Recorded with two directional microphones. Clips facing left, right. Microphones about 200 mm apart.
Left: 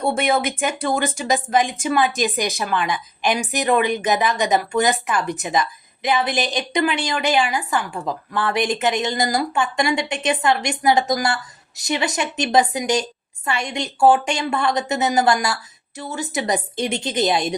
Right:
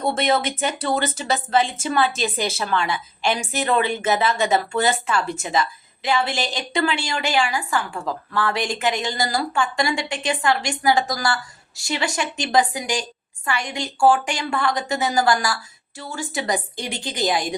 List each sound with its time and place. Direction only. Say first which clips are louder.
0.0 s a woman's voice: left 1 dB; 10° left (ahead or behind)